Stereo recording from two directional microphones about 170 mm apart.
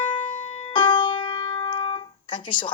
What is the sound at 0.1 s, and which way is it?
Music, 30° left (ahead or behind).